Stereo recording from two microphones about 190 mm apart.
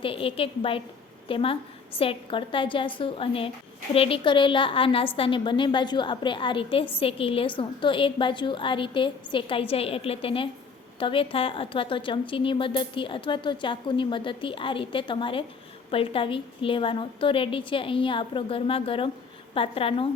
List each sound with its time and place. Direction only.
0.0 s a woman's voice: 30° left (ahead or behind)